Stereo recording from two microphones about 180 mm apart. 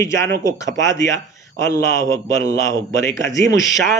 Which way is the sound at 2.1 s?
90° right.